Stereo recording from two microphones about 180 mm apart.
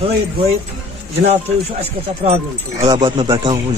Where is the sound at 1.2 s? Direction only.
35° right (ahead or behind).